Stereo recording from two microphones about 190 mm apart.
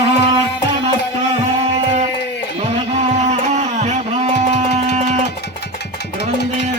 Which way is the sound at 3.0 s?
35° right (ahead or behind).